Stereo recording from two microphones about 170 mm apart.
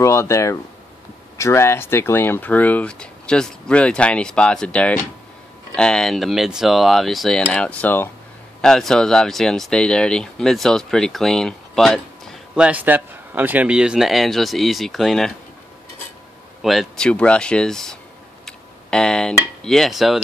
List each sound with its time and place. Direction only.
0.0 s speech: 15° left (ahead or behind)
16.6 s speech: centre (ahead or behind)
18.4 s tick: 5° left (ahead or behind)
19.6 s speech: centre (ahead or behind)